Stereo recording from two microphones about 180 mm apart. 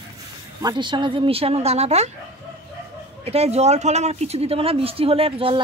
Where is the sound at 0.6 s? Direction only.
25° right (ahead or behind).